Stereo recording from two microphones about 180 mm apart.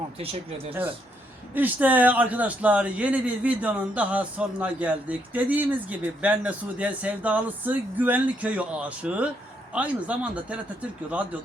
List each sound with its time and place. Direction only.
0.2 s speech: 30° right (ahead or behind)
1.5 s a man's voice: 10° right (ahead or behind)